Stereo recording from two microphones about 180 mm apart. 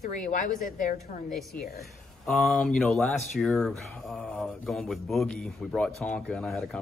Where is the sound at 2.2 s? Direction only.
Centre (ahead or behind).